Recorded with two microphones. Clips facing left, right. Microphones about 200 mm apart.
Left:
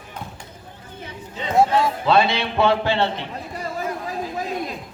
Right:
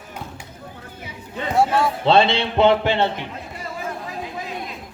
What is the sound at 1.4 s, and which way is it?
Speech, 60° right (ahead or behind).